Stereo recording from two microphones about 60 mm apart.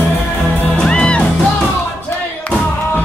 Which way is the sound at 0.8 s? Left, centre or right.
Centre.